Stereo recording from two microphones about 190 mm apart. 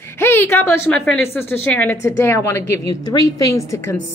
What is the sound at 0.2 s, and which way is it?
Speech, 10° left (ahead or behind).